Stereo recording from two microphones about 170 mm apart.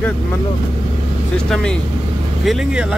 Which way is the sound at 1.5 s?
5° left (ahead or behind).